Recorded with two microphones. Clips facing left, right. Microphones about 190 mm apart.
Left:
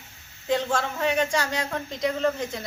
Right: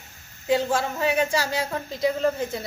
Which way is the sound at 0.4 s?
5° right (ahead or behind).